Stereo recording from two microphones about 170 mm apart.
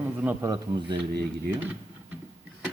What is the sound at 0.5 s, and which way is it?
Speech, 25° right (ahead or behind).